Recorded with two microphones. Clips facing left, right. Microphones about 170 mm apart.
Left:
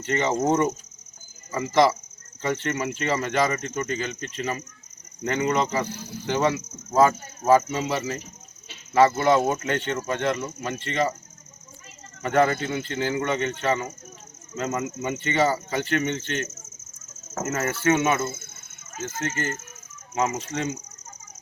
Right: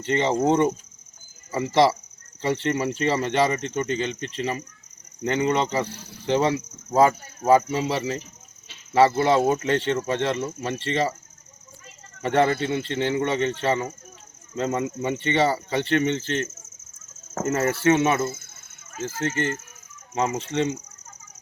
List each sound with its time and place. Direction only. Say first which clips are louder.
0.0 s speech: right 2 dB; 30° right (ahead or behind)
12.2 s speech: right 1 dB; 30° right (ahead or behind)
18.3 s a sound: right 1 dB; 25° left (ahead or behind)
19.2 s speech: right 4 dB; 30° right (ahead or behind)